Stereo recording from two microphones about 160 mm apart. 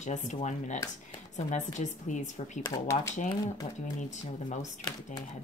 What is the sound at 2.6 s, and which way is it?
Speech, 20° left (ahead or behind).